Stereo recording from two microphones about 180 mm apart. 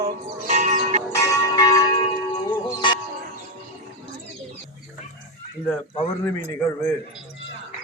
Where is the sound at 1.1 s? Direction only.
15° left (ahead or behind).